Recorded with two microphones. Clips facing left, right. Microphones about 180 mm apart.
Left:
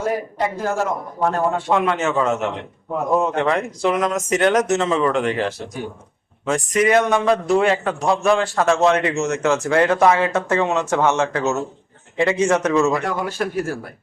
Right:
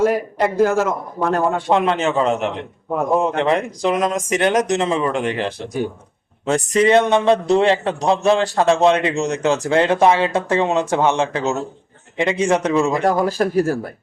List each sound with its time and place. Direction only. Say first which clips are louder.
0.0 s a man's voice: right 5 dB; 70° right (ahead or behind)
1.7 s a man's voice: right 3 dB; 25° right (ahead or behind)
13.1 s speech: right 6 dB; 35° right (ahead or behind)